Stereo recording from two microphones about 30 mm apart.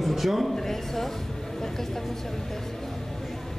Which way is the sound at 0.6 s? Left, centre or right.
Centre.